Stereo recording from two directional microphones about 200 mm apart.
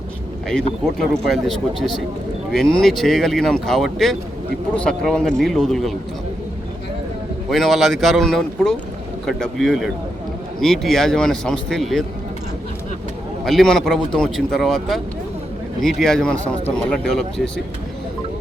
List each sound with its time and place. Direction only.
0.4 s speech: 5° left (ahead or behind)
7.5 s speech: centre (ahead or behind)
13.4 s speech: centre (ahead or behind)